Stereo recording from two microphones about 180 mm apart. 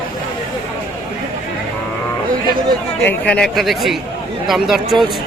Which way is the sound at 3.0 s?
5° left (ahead or behind).